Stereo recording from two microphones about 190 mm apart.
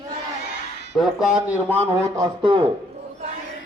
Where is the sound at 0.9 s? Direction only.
5° right (ahead or behind).